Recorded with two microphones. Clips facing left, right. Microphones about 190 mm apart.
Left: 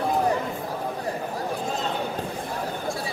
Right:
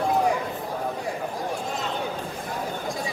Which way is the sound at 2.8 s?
15° right (ahead or behind).